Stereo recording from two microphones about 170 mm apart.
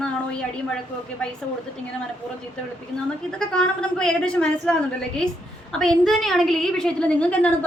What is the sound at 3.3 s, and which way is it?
A woman's voice, 5° left (ahead or behind).